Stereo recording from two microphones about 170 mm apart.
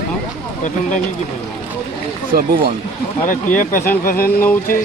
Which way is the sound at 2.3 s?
60° right (ahead or behind).